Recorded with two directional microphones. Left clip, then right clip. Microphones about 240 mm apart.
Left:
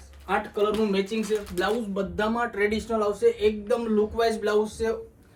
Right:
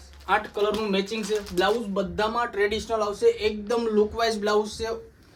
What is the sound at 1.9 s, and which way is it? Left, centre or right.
A man's voice, right.